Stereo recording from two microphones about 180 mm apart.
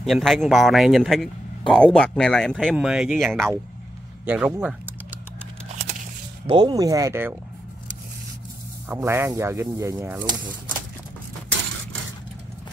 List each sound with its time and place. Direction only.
0.0 s a man's voice: centre (ahead or behind)
4.3 s typing: 5° right (ahead or behind)
6.4 s speech: 25° right (ahead or behind)
8.8 s speech: 15° right (ahead or behind)